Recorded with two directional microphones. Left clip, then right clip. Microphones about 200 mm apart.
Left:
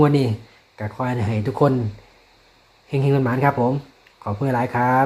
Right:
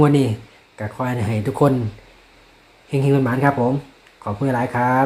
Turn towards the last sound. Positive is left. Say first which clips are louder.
# even
turn(degrees=15)  # may be behind; listen again after turning